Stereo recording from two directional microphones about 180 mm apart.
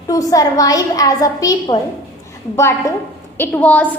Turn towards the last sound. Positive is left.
turn(degrees=10)  # may be behind; listen again after turning